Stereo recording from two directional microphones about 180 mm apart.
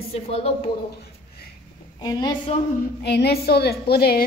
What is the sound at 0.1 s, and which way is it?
Speech, 35° left (ahead or behind).